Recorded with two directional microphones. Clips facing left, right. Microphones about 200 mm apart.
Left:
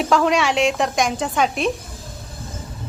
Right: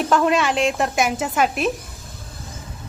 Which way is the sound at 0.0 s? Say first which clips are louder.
Even; centre (ahead or behind).